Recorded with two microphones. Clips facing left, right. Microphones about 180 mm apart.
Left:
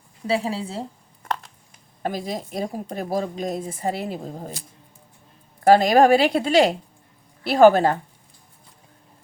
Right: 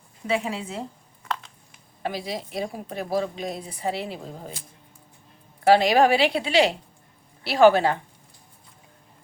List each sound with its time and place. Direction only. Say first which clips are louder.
0.3 s a woman's voice: left 2 dB; 35° left (ahead or behind)
2.0 s speech: left 2 dB; 45° left (ahead or behind)
5.6 s speech: left 3 dB; 45° left (ahead or behind)